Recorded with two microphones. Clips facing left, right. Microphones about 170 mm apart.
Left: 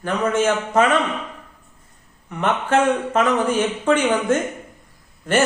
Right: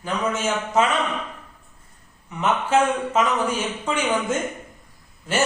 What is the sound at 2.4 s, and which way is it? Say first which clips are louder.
Speech: left 1 dB; 55° left (ahead or behind).